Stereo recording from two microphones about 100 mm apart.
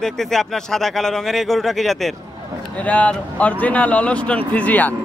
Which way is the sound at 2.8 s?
15° left (ahead or behind).